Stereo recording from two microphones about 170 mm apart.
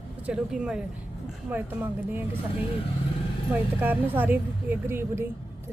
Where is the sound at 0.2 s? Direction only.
5° right (ahead or behind).